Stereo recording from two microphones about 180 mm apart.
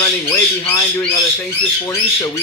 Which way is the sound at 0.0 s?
20° left (ahead or behind).